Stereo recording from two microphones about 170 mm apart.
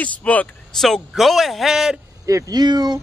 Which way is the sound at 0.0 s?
10° left (ahead or behind).